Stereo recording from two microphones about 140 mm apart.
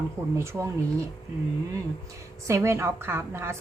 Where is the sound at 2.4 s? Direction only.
20° right (ahead or behind).